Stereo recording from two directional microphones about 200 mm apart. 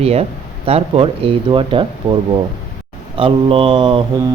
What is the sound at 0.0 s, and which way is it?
Mantra, 30° right (ahead or behind).